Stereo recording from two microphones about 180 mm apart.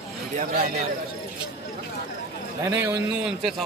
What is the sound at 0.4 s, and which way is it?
Speech, 55° right (ahead or behind).